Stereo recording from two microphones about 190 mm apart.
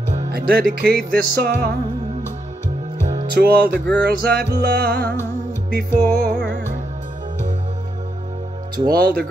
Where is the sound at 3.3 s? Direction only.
55° right (ahead or behind).